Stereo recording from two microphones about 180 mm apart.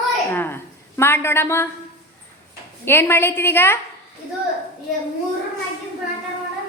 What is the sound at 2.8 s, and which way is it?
Speech, 10° left (ahead or behind).